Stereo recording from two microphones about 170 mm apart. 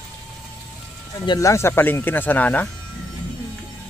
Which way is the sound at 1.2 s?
20° left (ahead or behind).